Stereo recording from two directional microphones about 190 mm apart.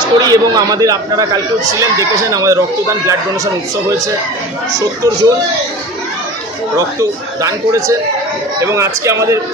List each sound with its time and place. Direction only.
0.2 s speech: 20° right (ahead or behind)
4.7 s speech: 20° right (ahead or behind)
7.0 s speech: 15° right (ahead or behind)